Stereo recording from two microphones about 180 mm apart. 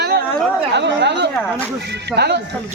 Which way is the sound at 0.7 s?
75° right (ahead or behind).